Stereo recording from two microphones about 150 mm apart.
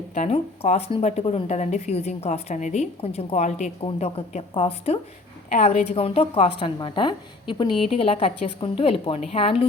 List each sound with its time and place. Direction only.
0.1 s speech: 45° left (ahead or behind)
4.5 s a woman's voice: 35° left (ahead or behind)
5.5 s a woman's voice: 55° left (ahead or behind)